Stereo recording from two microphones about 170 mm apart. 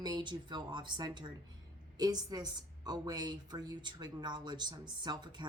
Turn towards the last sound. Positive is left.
turn(degrees=-25)  # may be behind; listen again after turning